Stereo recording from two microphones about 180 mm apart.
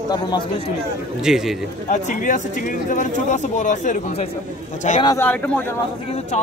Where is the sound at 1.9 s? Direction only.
40° left (ahead or behind).